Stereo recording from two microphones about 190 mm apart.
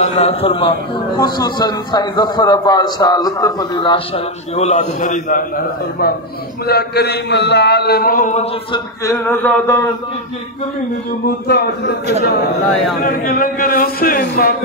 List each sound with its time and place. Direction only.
0.0 s a man's voice: 30° left (ahead or behind)
4.6 s a man's voice: 35° left (ahead or behind)
6.7 s a man's voice: 55° left (ahead or behind); by 8.5 s 40° left (ahead or behind)
8.7 s a sound: 15° left (ahead or behind)
11.4 s a man's voice: 60° left (ahead or behind)
13.0 s a man's voice: 50° left (ahead or behind)